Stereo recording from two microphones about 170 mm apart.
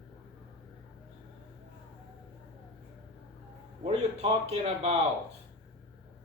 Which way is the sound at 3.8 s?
35° right (ahead or behind).